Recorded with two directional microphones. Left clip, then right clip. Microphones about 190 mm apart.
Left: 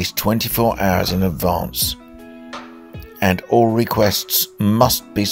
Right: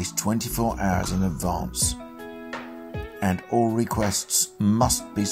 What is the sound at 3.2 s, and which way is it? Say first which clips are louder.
Speech: left 9 dB; 35° left (ahead or behind).